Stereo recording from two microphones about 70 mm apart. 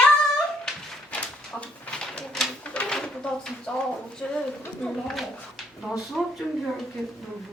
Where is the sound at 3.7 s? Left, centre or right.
Centre.